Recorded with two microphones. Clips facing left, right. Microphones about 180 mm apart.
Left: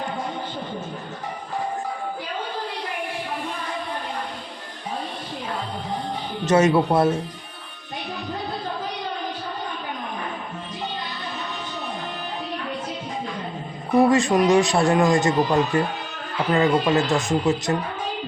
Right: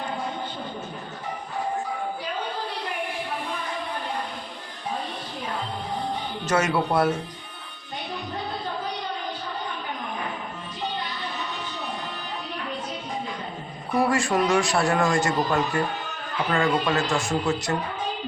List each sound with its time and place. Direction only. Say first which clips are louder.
6.5 s speech: left 6 dB; 25° left (ahead or behind)
13.9 s speech: left 5 dB; 20° left (ahead or behind)